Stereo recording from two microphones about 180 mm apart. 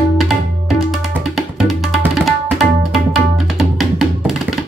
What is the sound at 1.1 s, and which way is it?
Music, centre (ahead or behind).